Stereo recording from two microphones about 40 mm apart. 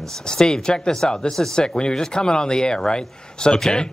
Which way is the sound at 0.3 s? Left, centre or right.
Centre.